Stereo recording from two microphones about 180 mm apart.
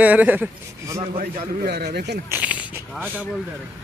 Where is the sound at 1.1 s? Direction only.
55° right (ahead or behind).